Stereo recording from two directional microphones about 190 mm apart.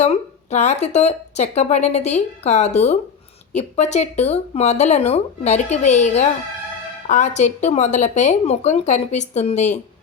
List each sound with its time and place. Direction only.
0.0 s speech: 35° left (ahead or behind)